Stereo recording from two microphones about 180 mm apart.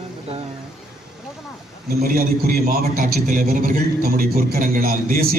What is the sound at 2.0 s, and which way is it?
A man's voice, 55° right (ahead or behind).